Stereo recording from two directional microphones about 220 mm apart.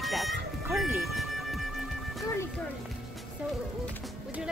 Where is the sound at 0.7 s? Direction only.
Centre (ahead or behind).